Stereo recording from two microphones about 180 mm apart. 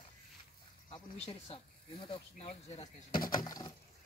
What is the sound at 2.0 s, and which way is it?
Speech, 30° left (ahead or behind).